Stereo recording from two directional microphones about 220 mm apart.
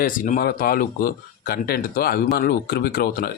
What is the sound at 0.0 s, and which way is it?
A man's voice, 40° left (ahead or behind).